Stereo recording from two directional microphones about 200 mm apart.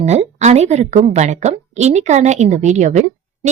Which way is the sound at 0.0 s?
35° right (ahead or behind).